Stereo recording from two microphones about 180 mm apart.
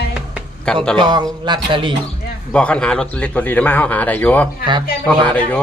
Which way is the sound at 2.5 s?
5° left (ahead or behind).